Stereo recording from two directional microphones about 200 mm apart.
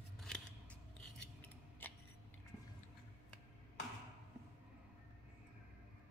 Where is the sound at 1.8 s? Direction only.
10° left (ahead or behind).